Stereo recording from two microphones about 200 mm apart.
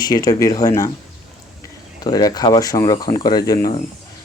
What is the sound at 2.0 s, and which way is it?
Speech, 20° left (ahead or behind).